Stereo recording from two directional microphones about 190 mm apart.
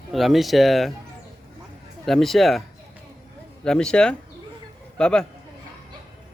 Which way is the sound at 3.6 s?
5° left (ahead or behind).